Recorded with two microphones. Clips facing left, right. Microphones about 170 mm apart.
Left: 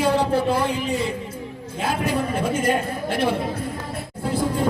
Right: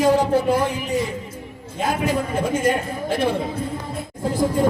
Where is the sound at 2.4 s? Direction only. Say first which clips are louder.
Right 1 dB; 45° right (ahead or behind).